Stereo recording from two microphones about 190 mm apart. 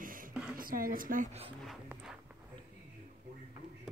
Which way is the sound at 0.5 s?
50° right (ahead or behind).